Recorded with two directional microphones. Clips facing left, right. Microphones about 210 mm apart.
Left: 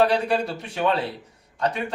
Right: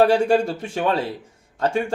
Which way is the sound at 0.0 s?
45° right (ahead or behind).